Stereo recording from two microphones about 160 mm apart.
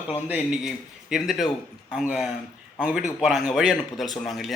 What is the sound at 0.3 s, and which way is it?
A man's voice, 5° right (ahead or behind).